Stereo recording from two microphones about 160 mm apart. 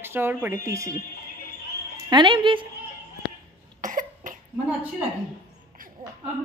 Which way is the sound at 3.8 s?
55° right (ahead or behind).